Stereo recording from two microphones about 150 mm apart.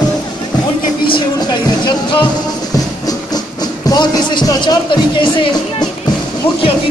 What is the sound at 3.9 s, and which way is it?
Speech, 30° left (ahead or behind).